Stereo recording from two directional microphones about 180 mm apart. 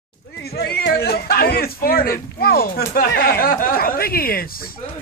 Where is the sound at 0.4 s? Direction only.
60° left (ahead or behind).